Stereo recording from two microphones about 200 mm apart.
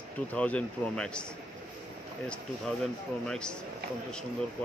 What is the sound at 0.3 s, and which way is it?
Speech, 5° left (ahead or behind).